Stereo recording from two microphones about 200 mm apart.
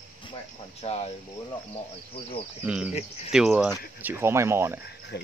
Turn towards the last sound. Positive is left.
turn(degrees=55)  # may be behind; listen again after turning